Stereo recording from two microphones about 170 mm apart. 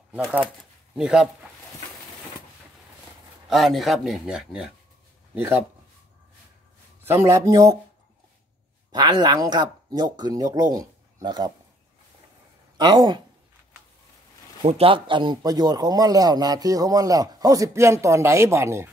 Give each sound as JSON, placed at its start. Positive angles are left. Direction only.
{"t": 0.1, "sound": "speech", "side_deg": -10}
{"t": 3.4, "sound": "speech", "side_deg": 0}
{"t": 7.0, "sound": "a man's voice", "side_deg": -15}
{"t": 8.9, "sound": "speech", "side_deg": -25}
{"t": 12.7, "sound": "speech", "side_deg": -25}
{"t": 14.6, "sound": "speech", "side_deg": -35}